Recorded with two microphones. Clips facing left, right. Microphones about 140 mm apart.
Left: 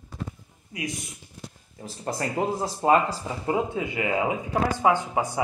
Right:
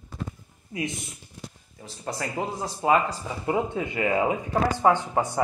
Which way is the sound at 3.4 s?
20° left (ahead or behind).